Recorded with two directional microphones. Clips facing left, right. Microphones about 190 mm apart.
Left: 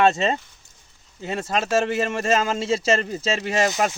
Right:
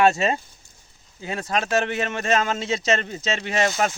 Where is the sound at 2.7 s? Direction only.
30° left (ahead or behind).